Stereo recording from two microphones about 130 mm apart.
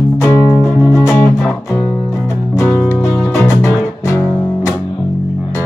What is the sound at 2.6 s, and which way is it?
Music, 20° left (ahead or behind).